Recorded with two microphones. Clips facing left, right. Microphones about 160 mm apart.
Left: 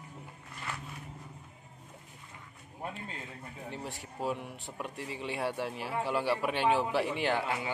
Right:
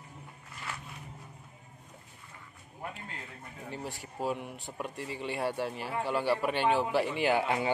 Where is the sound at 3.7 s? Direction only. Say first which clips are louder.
Right 3 dB; centre (ahead or behind).